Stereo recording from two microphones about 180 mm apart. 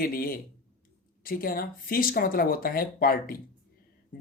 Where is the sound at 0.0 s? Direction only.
55° left (ahead or behind).